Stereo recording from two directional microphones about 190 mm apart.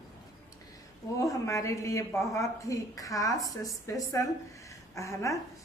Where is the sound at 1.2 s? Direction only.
15° left (ahead or behind).